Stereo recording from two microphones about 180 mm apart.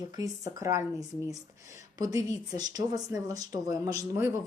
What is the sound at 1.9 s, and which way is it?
A woman's voice, 20° right (ahead or behind).